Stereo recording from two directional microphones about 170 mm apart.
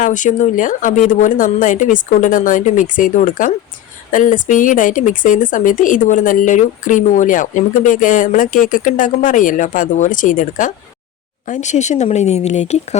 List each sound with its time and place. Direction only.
0.0 s speech: 50° left (ahead or behind)